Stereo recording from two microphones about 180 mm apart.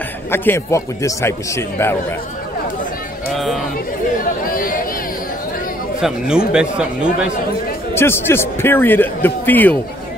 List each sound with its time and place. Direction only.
0.3 s a man's voice: 15° left (ahead or behind)
4.5 s a sound: 50° left (ahead or behind)
5.9 s speech: 5° right (ahead or behind)
7.9 s a man's voice: 15° left (ahead or behind)